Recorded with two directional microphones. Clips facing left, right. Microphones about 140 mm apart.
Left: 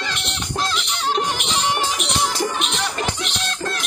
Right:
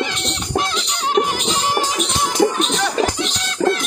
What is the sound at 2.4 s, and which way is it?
Music, 45° right (ahead or behind).